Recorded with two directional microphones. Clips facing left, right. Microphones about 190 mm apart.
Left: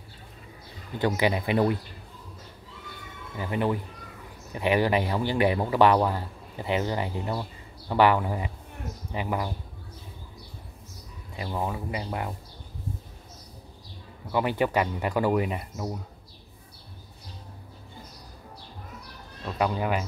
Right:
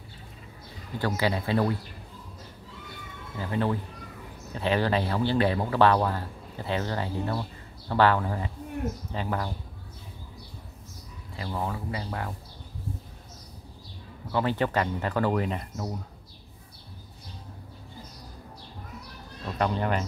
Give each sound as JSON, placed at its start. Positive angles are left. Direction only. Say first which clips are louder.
{"t": 0.9, "sound": "speech", "louder": "left 3 dB", "side_deg": 20}
{"t": 3.3, "sound": "speech", "louder": "left 1 dB", "side_deg": 15}
{"t": 11.3, "sound": "speech", "louder": "left 1 dB", "side_deg": 15}
{"t": 14.3, "sound": "speech", "louder": "left 1 dB", "side_deg": 10}
{"t": 19.4, "sound": "speech", "louder": "left 1 dB", "side_deg": 5}